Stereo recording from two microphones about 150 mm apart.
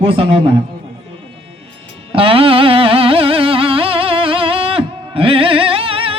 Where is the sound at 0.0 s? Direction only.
40° right (ahead or behind).